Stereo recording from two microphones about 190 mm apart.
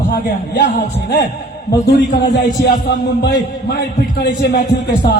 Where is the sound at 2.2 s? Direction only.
60° left (ahead or behind).